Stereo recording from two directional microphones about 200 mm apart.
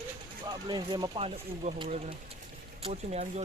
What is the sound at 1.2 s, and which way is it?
Speech, 30° right (ahead or behind).